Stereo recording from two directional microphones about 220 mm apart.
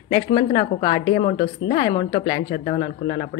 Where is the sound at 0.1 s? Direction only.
20° left (ahead or behind).